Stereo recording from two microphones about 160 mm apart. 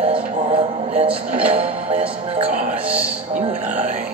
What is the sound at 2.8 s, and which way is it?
Speech, 10° right (ahead or behind).